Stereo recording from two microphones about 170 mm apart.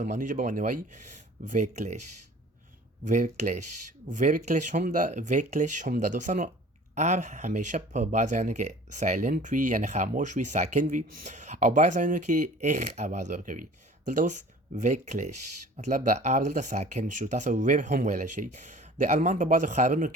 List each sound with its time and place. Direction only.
0.0 s speech: 50° right (ahead or behind)
3.0 s speech: 45° right (ahead or behind)
15.8 s speech: 55° right (ahead or behind)